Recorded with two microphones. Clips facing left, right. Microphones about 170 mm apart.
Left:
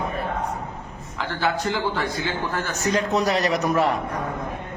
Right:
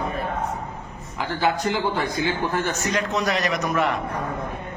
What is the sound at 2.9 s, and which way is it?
Speech, 35° left (ahead or behind).